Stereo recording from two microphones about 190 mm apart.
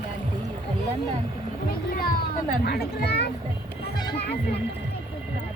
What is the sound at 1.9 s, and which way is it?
A child's voice, 50° left (ahead or behind).